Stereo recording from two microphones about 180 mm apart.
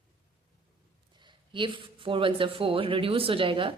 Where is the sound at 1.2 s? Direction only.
25° right (ahead or behind).